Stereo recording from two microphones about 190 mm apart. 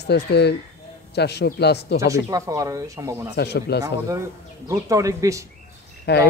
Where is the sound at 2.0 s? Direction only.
15° right (ahead or behind).